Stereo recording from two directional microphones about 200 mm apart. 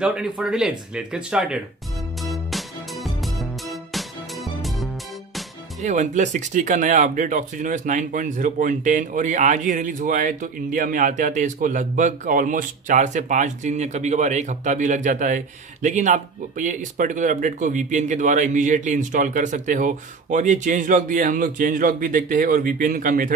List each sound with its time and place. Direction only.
0.0 s speech: 5° right (ahead or behind)
2.2 s music: centre (ahead or behind)
5.8 s speech: 35° right (ahead or behind)